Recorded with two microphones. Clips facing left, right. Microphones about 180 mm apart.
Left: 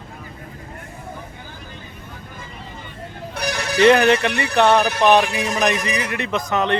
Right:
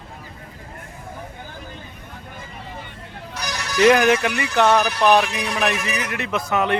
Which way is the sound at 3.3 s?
55° left (ahead or behind).